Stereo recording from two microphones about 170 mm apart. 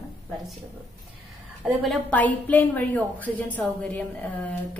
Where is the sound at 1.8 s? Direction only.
5° left (ahead or behind).